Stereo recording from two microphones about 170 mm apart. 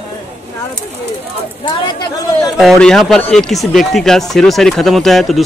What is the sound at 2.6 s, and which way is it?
Speech, centre (ahead or behind).